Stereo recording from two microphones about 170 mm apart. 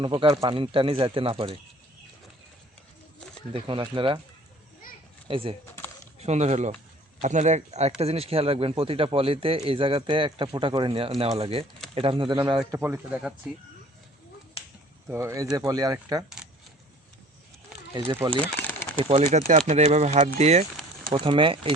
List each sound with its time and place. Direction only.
0.0 s speech: 30° right (ahead or behind)
3.5 s speech: 30° right (ahead or behind)
5.3 s speech: 35° right (ahead or behind)
12.7 s speech: 15° right (ahead or behind)
14.6 s finger snapping: 35° left (ahead or behind)
15.0 s speech: 15° right (ahead or behind)
17.9 s speech: 25° right (ahead or behind)
18.3 s bird: 10° left (ahead or behind)
19.0 s speech: 40° right (ahead or behind)
21.1 s speech: 30° right (ahead or behind)